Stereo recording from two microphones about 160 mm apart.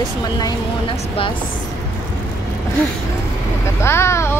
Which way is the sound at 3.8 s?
15° left (ahead or behind).